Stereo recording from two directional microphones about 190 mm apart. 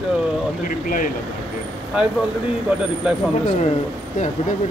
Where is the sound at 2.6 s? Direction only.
5° right (ahead or behind).